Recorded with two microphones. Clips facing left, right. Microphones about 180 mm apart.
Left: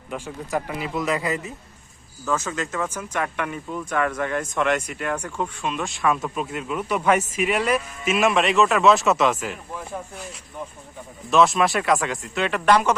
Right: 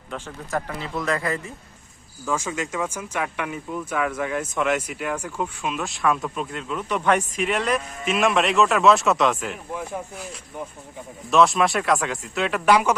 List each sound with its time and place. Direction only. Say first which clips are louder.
0.1 s a man's voice: left 1 dB; 10° left (ahead or behind)
2.2 s speech: left 1 dB; 10° right (ahead or behind)
11.3 s speech: even; centre (ahead or behind)